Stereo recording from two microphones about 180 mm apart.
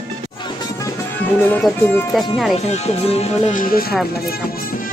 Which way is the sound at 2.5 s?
35° left (ahead or behind).